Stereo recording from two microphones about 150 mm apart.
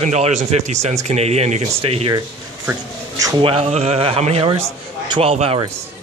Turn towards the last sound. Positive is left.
turn(degrees=-40)  # may be behind; listen again after turning